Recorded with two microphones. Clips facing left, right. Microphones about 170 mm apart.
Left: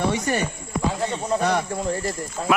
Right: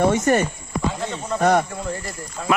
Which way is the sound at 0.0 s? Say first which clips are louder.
Right 5 dB; 45° right (ahead or behind).